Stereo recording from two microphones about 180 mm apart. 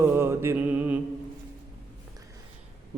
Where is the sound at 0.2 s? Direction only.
15° right (ahead or behind).